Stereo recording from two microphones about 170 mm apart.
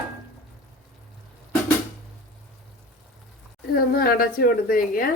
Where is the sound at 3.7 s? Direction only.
60° left (ahead or behind).